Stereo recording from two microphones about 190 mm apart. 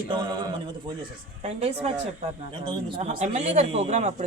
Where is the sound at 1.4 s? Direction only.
35° right (ahead or behind).